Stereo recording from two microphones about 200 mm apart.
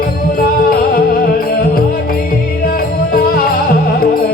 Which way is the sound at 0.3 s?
50° left (ahead or behind).